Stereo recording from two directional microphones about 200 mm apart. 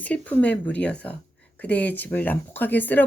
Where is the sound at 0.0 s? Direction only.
5° left (ahead or behind).